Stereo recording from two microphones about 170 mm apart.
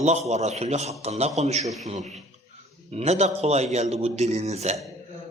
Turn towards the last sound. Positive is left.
turn(degrees=-40)  # may be behind; listen again after turning